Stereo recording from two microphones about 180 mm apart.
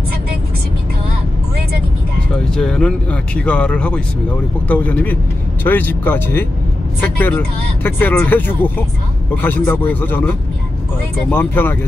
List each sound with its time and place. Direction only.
2.5 s speech: 5° left (ahead or behind)